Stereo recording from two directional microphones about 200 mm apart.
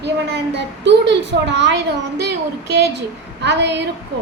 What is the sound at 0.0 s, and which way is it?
A woman's voice, 60° right (ahead or behind).